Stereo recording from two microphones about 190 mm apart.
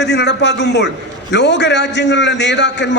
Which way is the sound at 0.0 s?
65° left (ahead or behind).